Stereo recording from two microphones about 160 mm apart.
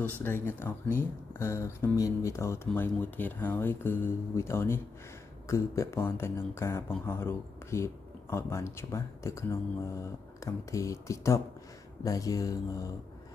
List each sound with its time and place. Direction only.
0.2 s speech: 15° left (ahead or behind)